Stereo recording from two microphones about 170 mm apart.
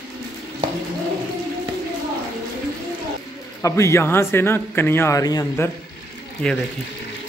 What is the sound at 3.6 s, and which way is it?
A man's voice, 15° left (ahead or behind).